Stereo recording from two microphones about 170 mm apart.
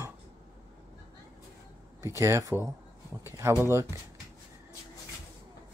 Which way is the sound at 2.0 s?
15° right (ahead or behind).